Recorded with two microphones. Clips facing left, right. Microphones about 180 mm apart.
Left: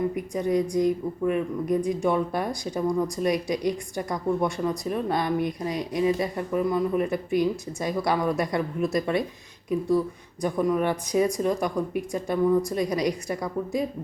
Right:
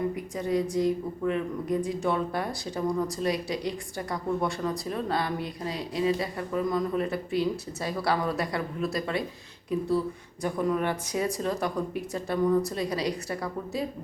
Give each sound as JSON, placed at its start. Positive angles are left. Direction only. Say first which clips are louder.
{"t": 0.3, "sound": "a woman's voice", "louder": "left 3 dB", "side_deg": 20}
{"t": 10.4, "sound": "a woman's voice", "louder": "left 3 dB", "side_deg": 15}